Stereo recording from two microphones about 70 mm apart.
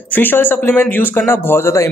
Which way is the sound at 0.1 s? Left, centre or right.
Left.